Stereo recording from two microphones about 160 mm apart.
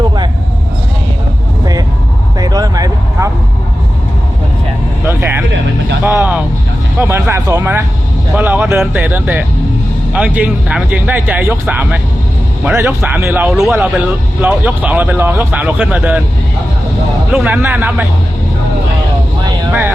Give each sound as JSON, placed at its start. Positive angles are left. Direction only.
{"t": 2.4, "sound": "vehicle", "side_deg": -25}
{"t": 5.0, "sound": "vehicle", "side_deg": -10}
{"t": 6.1, "sound": "music", "side_deg": -10}
{"t": 7.0, "sound": "a sound", "side_deg": -15}
{"t": 8.8, "sound": "a man's voice", "side_deg": -10}
{"t": 17.3, "sound": "speech", "side_deg": -10}